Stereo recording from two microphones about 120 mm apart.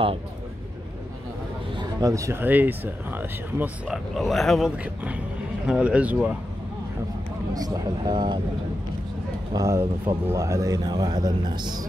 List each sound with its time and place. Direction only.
1.8 s speech: 30° right (ahead or behind); by 6.3 s 10° right (ahead or behind)
7.5 s speech: 30° right (ahead or behind)
9.5 s speech: 25° right (ahead or behind)